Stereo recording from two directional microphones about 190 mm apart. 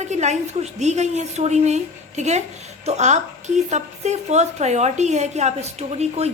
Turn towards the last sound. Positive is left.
turn(degrees=-35)  # may be behind; listen again after turning